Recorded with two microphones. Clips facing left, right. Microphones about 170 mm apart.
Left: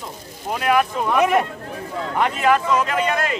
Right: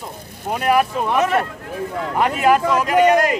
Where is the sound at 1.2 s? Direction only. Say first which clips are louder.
Left 1 dB; 15° left (ahead or behind).